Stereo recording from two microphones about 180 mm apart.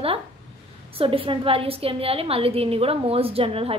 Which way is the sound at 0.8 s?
30° right (ahead or behind).